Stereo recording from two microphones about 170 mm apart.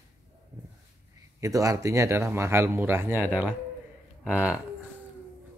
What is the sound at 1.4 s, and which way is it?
Speech, 20° right (ahead or behind).